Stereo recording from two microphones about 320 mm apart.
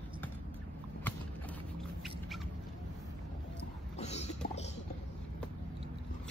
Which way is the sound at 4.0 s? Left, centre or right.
Centre.